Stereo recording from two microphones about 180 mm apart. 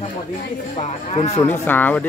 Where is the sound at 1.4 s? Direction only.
10° left (ahead or behind).